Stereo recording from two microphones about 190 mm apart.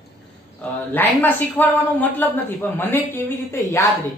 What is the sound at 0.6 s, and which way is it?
A man's voice, 10° left (ahead or behind).